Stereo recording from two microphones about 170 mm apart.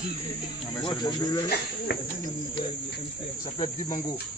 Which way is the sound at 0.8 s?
20° left (ahead or behind).